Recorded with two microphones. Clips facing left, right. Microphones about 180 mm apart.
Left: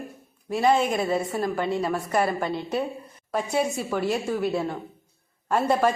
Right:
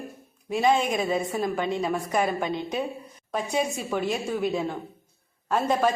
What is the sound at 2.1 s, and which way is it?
Speech, 10° right (ahead or behind).